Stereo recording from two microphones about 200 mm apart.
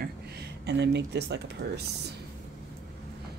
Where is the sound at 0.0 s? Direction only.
55° right (ahead or behind).